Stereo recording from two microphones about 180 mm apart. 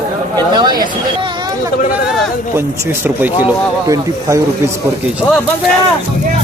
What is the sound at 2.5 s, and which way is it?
Speech, 15° right (ahead or behind).